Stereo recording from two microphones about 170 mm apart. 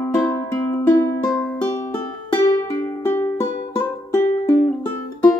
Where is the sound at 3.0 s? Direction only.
15° left (ahead or behind).